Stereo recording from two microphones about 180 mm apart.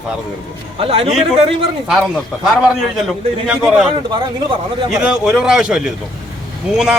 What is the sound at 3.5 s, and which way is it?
Speech, 5° right (ahead or behind).